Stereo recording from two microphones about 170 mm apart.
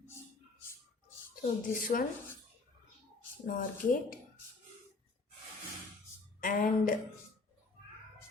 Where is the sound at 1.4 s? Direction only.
55° left (ahead or behind).